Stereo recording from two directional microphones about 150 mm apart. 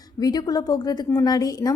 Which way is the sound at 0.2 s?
25° left (ahead or behind).